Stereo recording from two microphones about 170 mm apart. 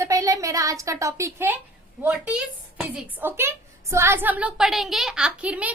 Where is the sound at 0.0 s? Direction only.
20° right (ahead or behind).